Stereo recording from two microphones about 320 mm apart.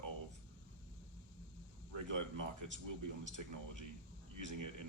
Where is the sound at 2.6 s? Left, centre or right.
Right.